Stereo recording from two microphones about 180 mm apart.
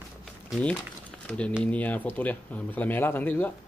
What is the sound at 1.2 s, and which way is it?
Speech, 5° left (ahead or behind).